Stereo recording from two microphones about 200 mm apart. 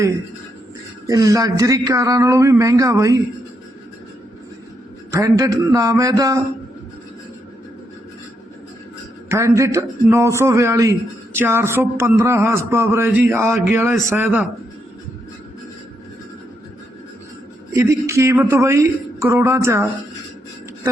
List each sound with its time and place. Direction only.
1.0 s speech: 15° right (ahead or behind)
5.1 s speech: 15° right (ahead or behind)
9.3 s speech: 15° right (ahead or behind)
17.7 s speech: 15° right (ahead or behind)